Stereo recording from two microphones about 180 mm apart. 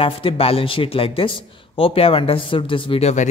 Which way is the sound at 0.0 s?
30° left (ahead or behind).